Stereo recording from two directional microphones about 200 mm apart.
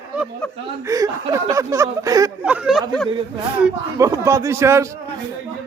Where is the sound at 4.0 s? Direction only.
15° right (ahead or behind).